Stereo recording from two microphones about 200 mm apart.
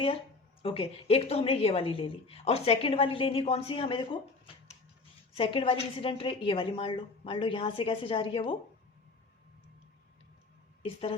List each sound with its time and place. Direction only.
0.6 s a woman's voice: 30° left (ahead or behind)